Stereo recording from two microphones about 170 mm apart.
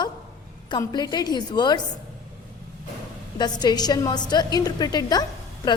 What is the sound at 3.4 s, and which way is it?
A woman's voice, 25° left (ahead or behind).